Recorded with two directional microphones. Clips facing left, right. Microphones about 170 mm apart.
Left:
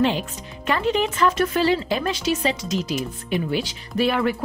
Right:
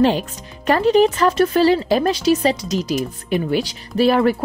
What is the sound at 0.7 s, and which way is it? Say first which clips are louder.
Speech: right 8 dB; 40° right (ahead or behind).